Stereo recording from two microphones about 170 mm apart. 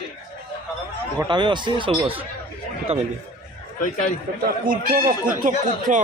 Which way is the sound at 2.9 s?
35° right (ahead or behind).